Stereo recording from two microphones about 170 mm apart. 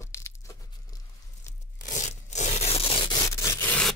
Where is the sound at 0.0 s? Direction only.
15° left (ahead or behind).